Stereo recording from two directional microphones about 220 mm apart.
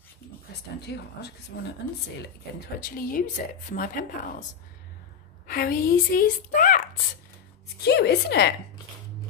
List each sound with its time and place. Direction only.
0.7 s a woman's voice: 50° left (ahead or behind)
3.0 s a woman's voice: 40° left (ahead or behind)
5.5 s a woman's voice: 45° left (ahead or behind)
7.8 s a woman's voice: 50° left (ahead or behind)